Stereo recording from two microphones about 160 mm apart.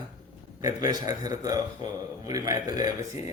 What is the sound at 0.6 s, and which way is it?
A man's voice, 25° right (ahead or behind).